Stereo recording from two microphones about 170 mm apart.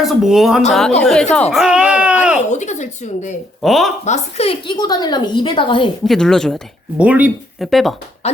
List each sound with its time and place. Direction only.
0.0 s speech: centre (ahead or behind)
1.4 s baby cry: centre (ahead or behind)
2.5 s speech: 45° left (ahead or behind)
3.6 s speech: centre (ahead or behind)
4.0 s a woman's voice: 40° left (ahead or behind)
6.1 s speech: 5° left (ahead or behind)
7.0 s speech: 10° right (ahead or behind)